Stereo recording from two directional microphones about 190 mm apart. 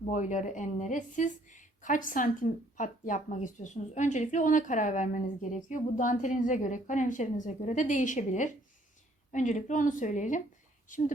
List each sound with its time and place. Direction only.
0.1 s a woman's voice: 40° left (ahead or behind)